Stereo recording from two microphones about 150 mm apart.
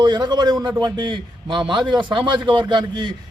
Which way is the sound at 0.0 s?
30° right (ahead or behind).